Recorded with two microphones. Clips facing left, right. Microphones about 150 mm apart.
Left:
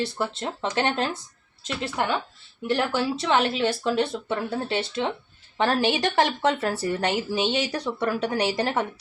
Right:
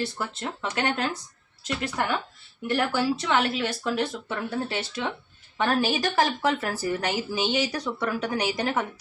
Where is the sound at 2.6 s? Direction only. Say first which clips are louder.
Even; 20° left (ahead or behind).